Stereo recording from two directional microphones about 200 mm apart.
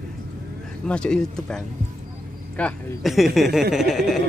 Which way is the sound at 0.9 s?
5° left (ahead or behind).